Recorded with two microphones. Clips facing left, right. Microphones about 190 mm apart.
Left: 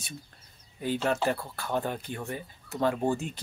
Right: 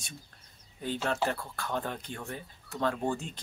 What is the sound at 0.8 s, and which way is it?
Speech, 10° left (ahead or behind).